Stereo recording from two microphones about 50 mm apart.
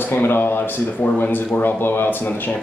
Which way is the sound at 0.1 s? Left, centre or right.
Left.